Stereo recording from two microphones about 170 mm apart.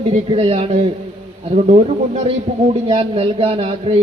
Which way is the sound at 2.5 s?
35° right (ahead or behind).